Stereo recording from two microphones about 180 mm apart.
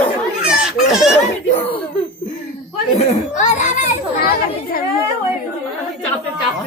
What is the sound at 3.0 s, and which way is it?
A child's voice, 45° left (ahead or behind).